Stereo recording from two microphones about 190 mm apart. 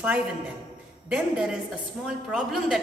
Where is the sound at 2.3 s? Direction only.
Centre (ahead or behind).